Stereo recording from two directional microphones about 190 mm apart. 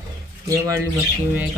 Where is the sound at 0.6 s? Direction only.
15° right (ahead or behind).